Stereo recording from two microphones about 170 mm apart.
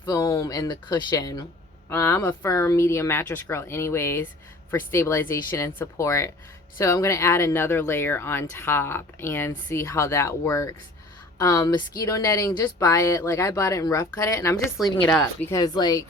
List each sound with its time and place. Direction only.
0.0 s speech: 20° left (ahead or behind)